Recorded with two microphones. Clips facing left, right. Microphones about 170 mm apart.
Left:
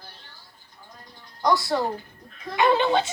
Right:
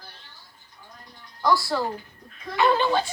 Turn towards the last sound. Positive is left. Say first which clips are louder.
# left 1 dB
turn(degrees=20)  # may be behind; listen again after turning